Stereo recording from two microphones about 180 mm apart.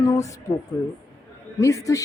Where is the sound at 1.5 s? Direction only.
15° left (ahead or behind).